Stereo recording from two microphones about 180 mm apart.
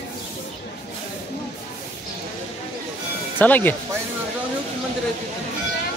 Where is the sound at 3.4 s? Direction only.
10° left (ahead or behind).